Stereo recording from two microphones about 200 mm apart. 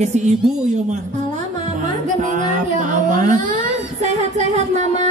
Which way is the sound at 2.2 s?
40° right (ahead or behind).